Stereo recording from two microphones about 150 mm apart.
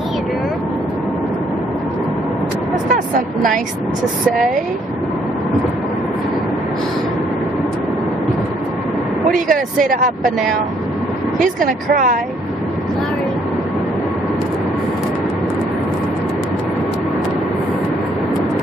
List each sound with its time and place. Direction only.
9.3 s speech: 65° right (ahead or behind)
11.3 s speech: 60° right (ahead or behind)